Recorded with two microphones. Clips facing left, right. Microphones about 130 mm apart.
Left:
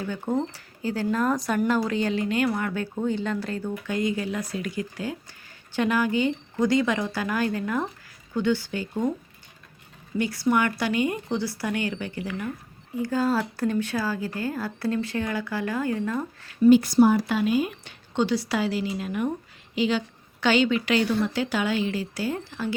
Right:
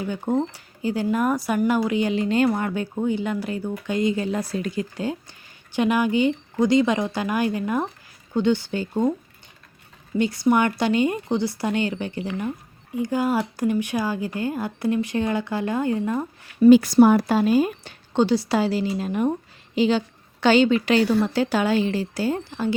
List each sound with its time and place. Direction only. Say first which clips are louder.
0.0 s speech: right 3 dB; 15° right (ahead or behind)
2.2 s speech: right 4 dB; 25° right (ahead or behind)
2.8 s speech: right 3 dB; 15° right (ahead or behind)
3.9 s speech: right 4 dB; 25° right (ahead or behind)
10.2 s speech: right 4 dB; 20° right (ahead or behind)
16.6 s speech: right 4 dB; 90° right; by 17.2 s 65° right (ahead or behind)
17.2 s a woman's voice: right 5 dB; 40° right (ahead or behind)